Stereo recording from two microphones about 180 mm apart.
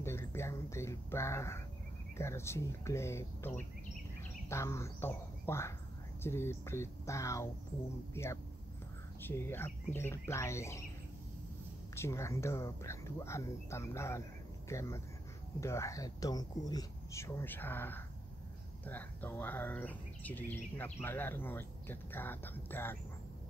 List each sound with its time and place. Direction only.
0.0 s a sound: 15° left (ahead or behind)
2.1 s speech: 15° left (ahead or behind)
11.9 s speech: 15° left (ahead or behind)